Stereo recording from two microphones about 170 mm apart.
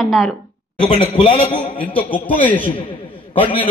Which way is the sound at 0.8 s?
30° left (ahead or behind).